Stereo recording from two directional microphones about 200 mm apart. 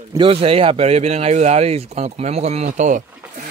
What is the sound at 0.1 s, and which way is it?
Speech, 25° right (ahead or behind).